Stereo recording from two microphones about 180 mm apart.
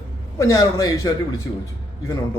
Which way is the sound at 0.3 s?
20° left (ahead or behind).